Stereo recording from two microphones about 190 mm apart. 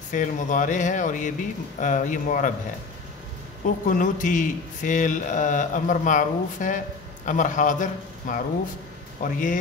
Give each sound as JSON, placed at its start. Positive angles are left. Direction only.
{"t": 0.1, "sound": "speech", "side_deg": 40}
{"t": 3.6, "sound": "a man's voice", "side_deg": 45}